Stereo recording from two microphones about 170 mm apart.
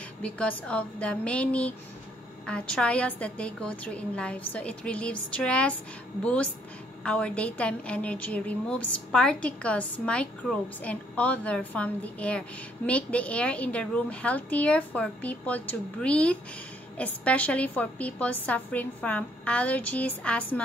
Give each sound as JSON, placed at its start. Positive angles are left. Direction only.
{"t": 0.2, "sound": "a woman's voice", "side_deg": 5}